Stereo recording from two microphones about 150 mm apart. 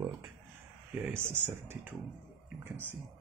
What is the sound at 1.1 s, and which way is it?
Speech, 15° right (ahead or behind).